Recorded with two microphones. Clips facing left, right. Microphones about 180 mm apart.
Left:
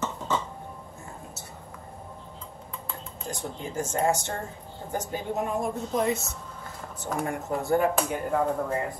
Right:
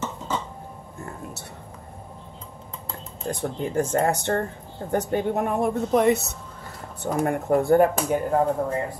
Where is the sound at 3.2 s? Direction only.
60° right (ahead or behind).